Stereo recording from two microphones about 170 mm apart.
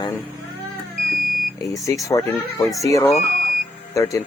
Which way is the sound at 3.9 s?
20° left (ahead or behind).